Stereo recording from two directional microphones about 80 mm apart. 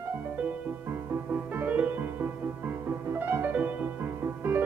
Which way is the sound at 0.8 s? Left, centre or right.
Right.